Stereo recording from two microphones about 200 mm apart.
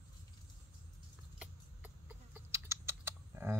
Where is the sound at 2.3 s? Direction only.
15° right (ahead or behind).